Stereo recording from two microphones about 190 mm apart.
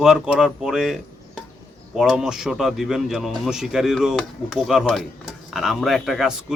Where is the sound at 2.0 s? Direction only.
5° right (ahead or behind).